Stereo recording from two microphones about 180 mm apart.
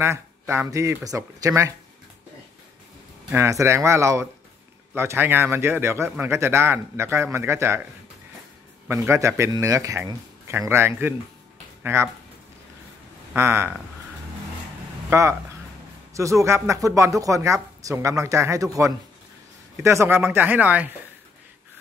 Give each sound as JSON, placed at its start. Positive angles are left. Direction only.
{"t": 0.0, "sound": "speech", "side_deg": -15}
{"t": 3.3, "sound": "speech", "side_deg": -15}
{"t": 8.8, "sound": "speech", "side_deg": -15}
{"t": 13.3, "sound": "speech", "side_deg": -15}
{"t": 15.0, "sound": "speech", "side_deg": -15}